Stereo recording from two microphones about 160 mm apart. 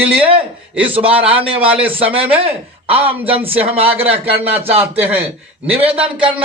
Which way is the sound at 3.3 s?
35° right (ahead or behind).